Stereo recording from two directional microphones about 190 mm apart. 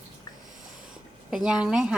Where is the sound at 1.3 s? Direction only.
5° right (ahead or behind).